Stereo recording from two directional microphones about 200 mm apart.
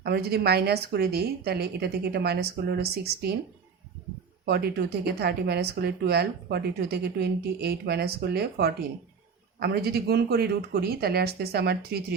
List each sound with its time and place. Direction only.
0.0 s speech: 55° right (ahead or behind)
4.4 s speech: 55° right (ahead or behind)